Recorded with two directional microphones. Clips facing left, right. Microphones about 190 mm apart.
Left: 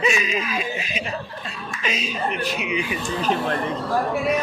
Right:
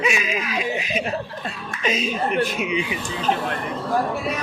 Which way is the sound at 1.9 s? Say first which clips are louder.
Right 4 dB; 45° right (ahead or behind).